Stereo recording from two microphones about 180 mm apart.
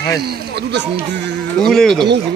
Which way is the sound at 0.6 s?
70° right (ahead or behind).